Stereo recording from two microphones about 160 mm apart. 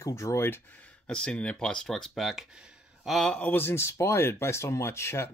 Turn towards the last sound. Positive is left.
turn(degrees=15)  # may be behind; listen again after turning